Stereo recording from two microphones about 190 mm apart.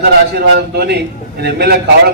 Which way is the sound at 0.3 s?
55° right (ahead or behind).